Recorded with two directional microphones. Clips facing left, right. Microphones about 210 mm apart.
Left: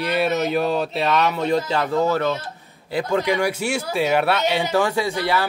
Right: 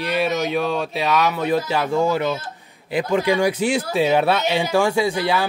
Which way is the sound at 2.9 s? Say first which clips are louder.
Right 2 dB; 15° right (ahead or behind).